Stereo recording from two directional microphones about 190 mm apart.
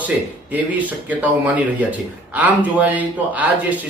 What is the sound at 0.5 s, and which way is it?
Speech, 10° right (ahead or behind).